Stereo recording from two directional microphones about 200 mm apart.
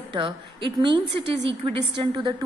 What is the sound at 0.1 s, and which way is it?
A woman's voice, 25° right (ahead or behind).